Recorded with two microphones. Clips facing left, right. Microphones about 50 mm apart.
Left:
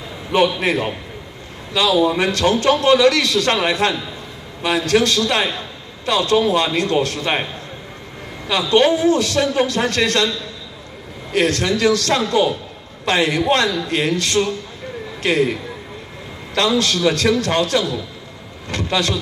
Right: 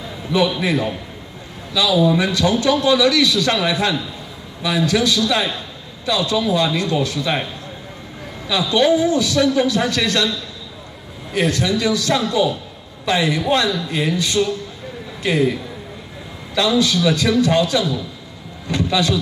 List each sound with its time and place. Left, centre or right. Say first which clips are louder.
0.3 s a man's voice: left 1 dB; left
8.5 s a man's voice: left 1 dB; left
11.3 s a man's voice: left 1 dB; left
16.5 s a man's voice: right 1 dB; left